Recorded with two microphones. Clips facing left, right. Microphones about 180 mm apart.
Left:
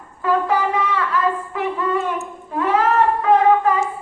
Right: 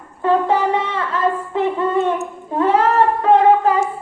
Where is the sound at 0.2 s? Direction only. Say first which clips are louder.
Right 3 dB; 30° right (ahead or behind).